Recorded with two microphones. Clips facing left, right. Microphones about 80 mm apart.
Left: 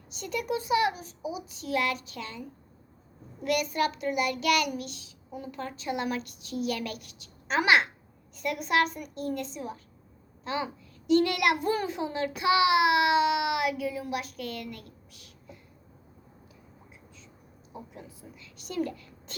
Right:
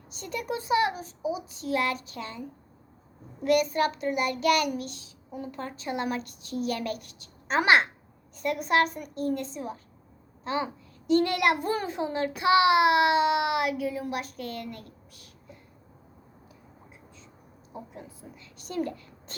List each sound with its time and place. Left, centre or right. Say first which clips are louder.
0.2 s child singing: left 2 dB; right
3.4 s child singing: right 4 dB; right
10.4 s a child's voice: right 2 dB; right
11.6 s child singing: even; right
17.9 s child singing: right 2 dB; right
18.8 s a woman's voice: even; right